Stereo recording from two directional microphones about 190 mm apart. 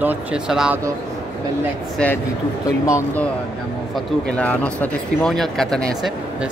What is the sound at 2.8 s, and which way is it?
Speech, 15° left (ahead or behind).